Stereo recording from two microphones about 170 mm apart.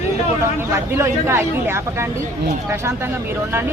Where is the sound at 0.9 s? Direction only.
15° right (ahead or behind).